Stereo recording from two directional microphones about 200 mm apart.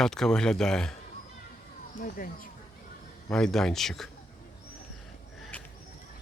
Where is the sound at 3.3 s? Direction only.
5° left (ahead or behind).